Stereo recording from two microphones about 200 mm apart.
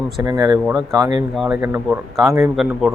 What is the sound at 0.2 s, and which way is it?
A man's voice, 20° right (ahead or behind).